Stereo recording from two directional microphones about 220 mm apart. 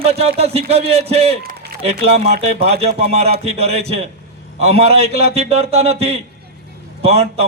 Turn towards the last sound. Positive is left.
turn(degrees=-30)  # may be behind; listen again after turning